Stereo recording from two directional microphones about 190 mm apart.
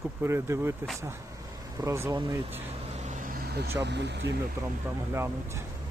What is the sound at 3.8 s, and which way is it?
Speech, 65° right (ahead or behind).